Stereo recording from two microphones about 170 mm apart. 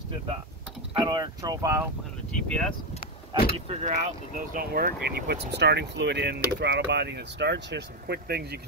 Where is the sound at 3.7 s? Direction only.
40° right (ahead or behind); by 8.6 s 70° right (ahead or behind).